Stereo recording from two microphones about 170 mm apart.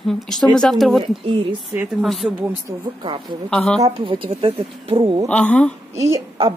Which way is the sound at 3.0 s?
30° right (ahead or behind).